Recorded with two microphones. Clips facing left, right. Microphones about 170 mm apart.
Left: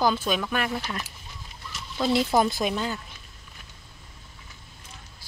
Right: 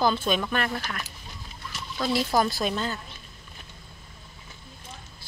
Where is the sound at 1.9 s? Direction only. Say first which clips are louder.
Left 2 dB; 20° left (ahead or behind).